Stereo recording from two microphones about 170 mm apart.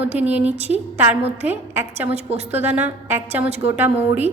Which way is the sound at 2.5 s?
10° right (ahead or behind).